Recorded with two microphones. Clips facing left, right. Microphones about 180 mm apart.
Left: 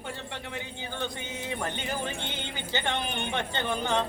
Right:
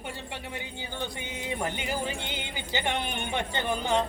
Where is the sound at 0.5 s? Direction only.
15° right (ahead or behind).